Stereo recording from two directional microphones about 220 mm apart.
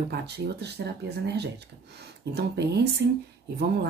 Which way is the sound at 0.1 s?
50° right (ahead or behind).